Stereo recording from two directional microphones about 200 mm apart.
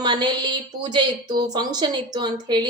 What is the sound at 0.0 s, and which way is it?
A woman's voice, 20° right (ahead or behind).